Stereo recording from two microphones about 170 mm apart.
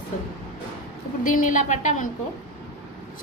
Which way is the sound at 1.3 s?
50° left (ahead or behind).